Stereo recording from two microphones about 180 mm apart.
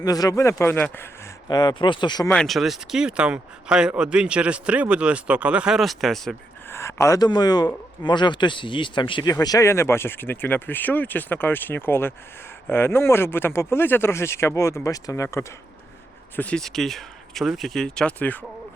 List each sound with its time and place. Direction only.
0.0 s speech: 20° left (ahead or behind)
1.5 s speech: 25° left (ahead or behind)
2.3 s speech: centre (ahead or behind)
6.7 s speech: 15° left (ahead or behind)